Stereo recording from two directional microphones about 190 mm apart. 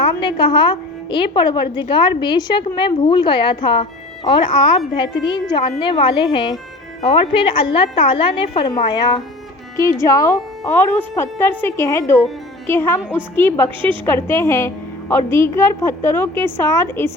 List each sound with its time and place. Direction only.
0.0 s a woman's voice: 25° left (ahead or behind)